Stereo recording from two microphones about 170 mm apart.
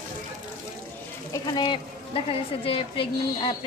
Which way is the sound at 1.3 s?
25° left (ahead or behind).